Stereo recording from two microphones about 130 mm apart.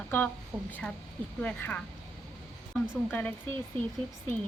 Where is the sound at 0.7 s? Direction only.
10° left (ahead or behind).